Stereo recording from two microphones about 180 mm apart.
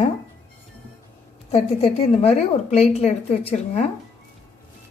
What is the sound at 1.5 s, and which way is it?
A woman's voice, 35° left (ahead or behind).